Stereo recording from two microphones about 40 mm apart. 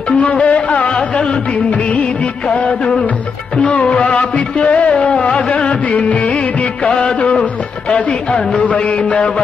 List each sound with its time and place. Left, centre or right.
0.1 s music: left
2.4 s music of bollywood: left
3.8 s music: left
5.1 s music: left
5.5 s music of bollywood: left
7.2 s music: left